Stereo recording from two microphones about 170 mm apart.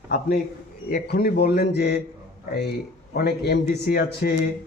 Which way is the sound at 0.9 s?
65° left (ahead or behind).